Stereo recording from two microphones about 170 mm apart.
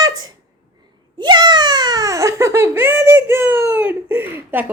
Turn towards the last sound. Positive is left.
turn(degrees=-10)  # may be behind; listen again after turning